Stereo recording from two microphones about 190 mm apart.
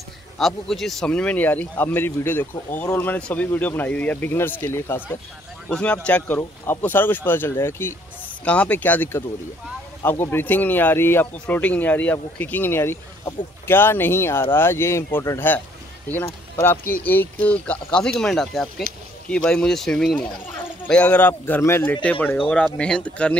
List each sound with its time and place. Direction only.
0.4 s speech: centre (ahead or behind)